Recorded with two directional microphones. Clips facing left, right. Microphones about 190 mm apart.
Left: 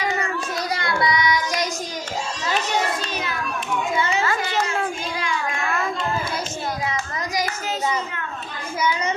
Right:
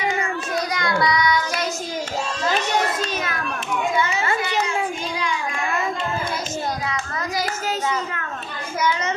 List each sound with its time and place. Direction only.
0.7 s child singing: 30° left (ahead or behind)